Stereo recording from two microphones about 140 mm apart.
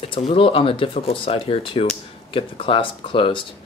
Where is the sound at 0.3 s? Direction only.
40° left (ahead or behind).